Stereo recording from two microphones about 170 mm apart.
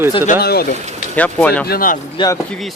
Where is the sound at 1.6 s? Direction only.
60° left (ahead or behind).